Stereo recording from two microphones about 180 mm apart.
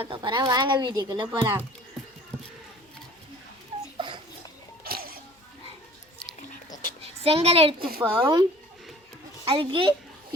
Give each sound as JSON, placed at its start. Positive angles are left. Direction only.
{"t": 0.0, "sound": "a woman's voice", "side_deg": -25}
{"t": 3.9, "sound": "dog", "side_deg": -25}
{"t": 4.8, "sound": "music", "side_deg": -55}
{"t": 7.0, "sound": "a child's voice", "side_deg": -35}
{"t": 8.0, "sound": "a woman's voice", "side_deg": -20}
{"t": 9.5, "sound": "a woman's voice", "side_deg": -30}